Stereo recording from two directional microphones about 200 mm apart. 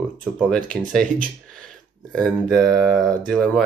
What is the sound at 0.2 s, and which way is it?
Speech, 5° left (ahead or behind).